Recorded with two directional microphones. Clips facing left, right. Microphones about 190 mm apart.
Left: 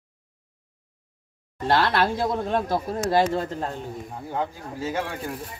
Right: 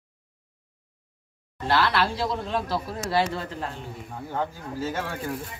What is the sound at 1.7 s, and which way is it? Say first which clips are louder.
Speech: left 2 dB; 50° left (ahead or behind).